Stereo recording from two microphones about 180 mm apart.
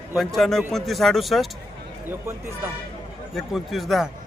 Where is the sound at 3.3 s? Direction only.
Centre (ahead or behind).